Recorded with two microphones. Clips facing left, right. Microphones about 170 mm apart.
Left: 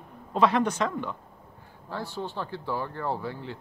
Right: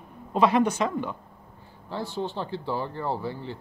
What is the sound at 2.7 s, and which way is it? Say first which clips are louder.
Speech: even; 15° right (ahead or behind).